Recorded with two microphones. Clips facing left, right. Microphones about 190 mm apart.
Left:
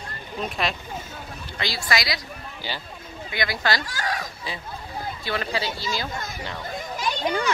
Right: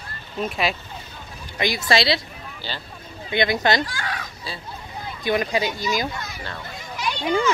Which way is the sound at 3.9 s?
40° left (ahead or behind).